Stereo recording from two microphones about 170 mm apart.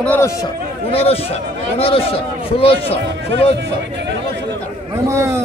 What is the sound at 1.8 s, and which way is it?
Speech, 35° left (ahead or behind).